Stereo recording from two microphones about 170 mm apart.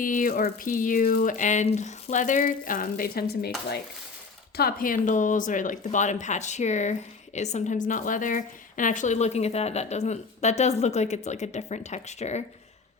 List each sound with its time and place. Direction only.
0.0 s speech: 55° left (ahead or behind)
4.5 s a woman's voice: 60° left (ahead or behind); by 12.4 s 40° left (ahead or behind)